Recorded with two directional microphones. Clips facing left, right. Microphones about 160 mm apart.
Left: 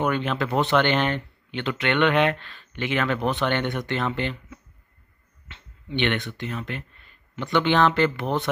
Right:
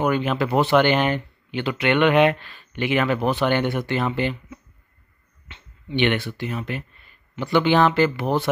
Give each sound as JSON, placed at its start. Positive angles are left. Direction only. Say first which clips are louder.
{"t": 0.0, "sound": "speech", "louder": "right 3 dB", "side_deg": -5}